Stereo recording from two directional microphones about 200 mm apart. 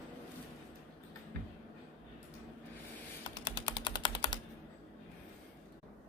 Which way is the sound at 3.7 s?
25° left (ahead or behind).